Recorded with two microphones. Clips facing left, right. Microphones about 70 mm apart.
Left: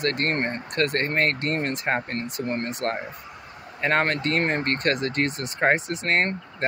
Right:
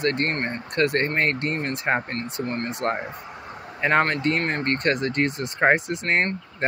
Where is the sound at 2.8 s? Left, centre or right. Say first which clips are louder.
Right 3 dB; centre.